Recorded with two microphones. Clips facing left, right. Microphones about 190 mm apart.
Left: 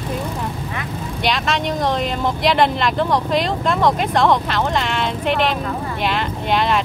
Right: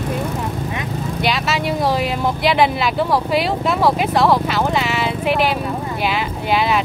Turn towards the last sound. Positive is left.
turn(degrees=-5)  # may be behind; listen again after turning